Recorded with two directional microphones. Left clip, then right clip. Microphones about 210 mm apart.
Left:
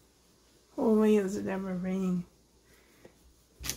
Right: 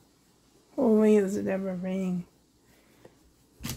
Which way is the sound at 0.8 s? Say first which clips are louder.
Right 4 dB; 25° right (ahead or behind).